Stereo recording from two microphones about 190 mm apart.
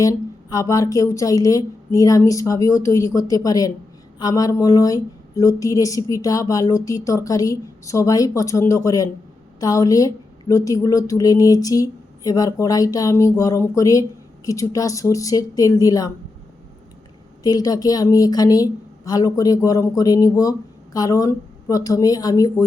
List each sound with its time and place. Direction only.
0.0 s speech: 15° left (ahead or behind)
17.4 s a woman's voice: 20° left (ahead or behind)